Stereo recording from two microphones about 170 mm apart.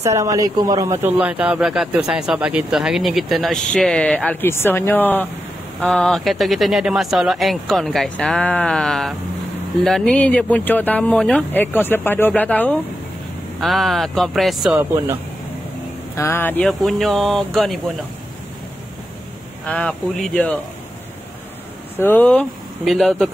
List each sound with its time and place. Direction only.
0.0 s speech: 20° right (ahead or behind)
1.2 s speech: 10° right (ahead or behind)
16.2 s speech: 15° left (ahead or behind)
19.6 s speech: 10° left (ahead or behind)
22.0 s speech: 10° left (ahead or behind)